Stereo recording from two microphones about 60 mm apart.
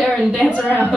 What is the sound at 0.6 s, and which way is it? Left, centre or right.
Speech, right.